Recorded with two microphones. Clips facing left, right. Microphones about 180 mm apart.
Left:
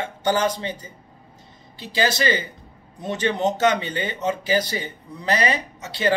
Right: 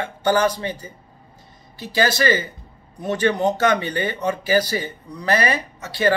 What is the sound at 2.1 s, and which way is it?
Speech, 20° left (ahead or behind).